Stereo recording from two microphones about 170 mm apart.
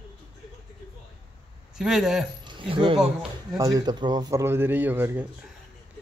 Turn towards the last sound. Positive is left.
turn(degrees=-10)  # may be behind; listen again after turning